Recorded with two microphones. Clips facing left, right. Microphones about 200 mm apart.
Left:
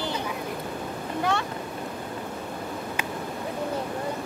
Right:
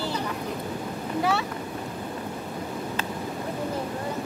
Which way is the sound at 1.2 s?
5° right (ahead or behind).